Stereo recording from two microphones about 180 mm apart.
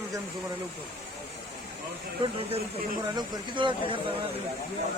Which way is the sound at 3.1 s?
25° right (ahead or behind).